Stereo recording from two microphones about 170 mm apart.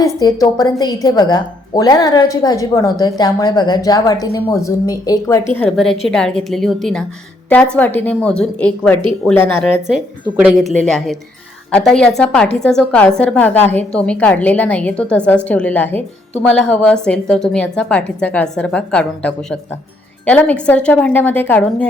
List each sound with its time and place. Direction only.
0.2 s a woman's voice: 25° left (ahead or behind)
5.5 s a woman's voice: 5° left (ahead or behind)
10.3 s a woman's voice: centre (ahead or behind)